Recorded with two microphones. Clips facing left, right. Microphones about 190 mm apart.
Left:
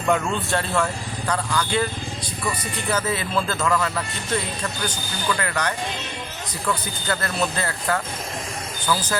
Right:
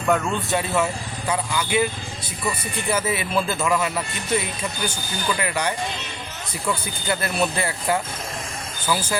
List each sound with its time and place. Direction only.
0.1 s speech: 5° right (ahead or behind)
2.9 s speech: 10° right (ahead or behind)
7.2 s speech: 15° right (ahead or behind)